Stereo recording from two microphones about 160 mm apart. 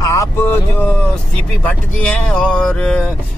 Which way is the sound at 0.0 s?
20° left (ahead or behind).